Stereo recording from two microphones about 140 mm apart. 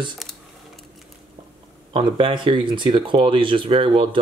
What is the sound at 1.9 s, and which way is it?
Speech, 40° right (ahead or behind).